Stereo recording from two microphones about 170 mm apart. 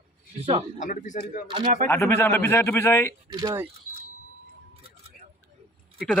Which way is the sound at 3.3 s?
20° right (ahead or behind).